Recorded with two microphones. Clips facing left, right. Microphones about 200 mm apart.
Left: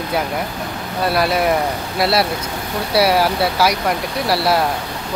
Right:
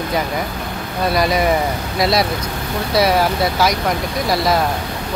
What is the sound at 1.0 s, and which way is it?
Speech, 5° left (ahead or behind).